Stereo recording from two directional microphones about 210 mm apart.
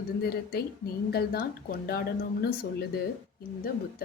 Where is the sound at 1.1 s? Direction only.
45° left (ahead or behind).